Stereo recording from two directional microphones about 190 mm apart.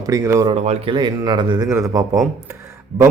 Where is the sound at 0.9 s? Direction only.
25° right (ahead or behind).